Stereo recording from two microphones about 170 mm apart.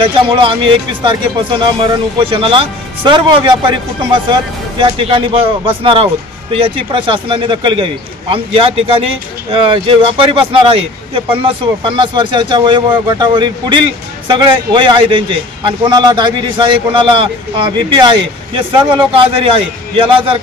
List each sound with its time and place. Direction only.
0.0 s a man's voice: 30° right (ahead or behind)